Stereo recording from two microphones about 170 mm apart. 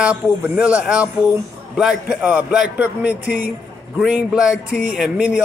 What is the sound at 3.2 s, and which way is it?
Speech, 55° right (ahead or behind).